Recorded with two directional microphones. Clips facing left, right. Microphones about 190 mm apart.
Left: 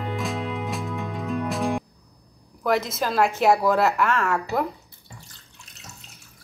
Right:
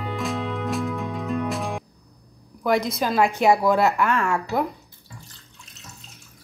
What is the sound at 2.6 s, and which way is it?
Speech, centre (ahead or behind).